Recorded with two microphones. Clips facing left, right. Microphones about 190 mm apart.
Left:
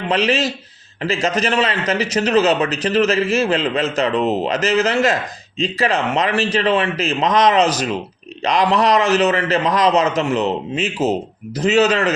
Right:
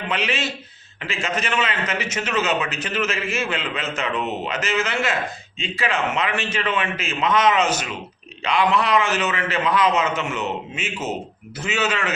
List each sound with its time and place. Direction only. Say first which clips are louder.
0.1 s a man's voice: left 8 dB; 35° left (ahead or behind)